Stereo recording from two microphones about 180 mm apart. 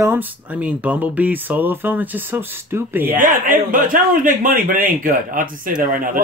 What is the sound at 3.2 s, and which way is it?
Speech, 50° right (ahead or behind).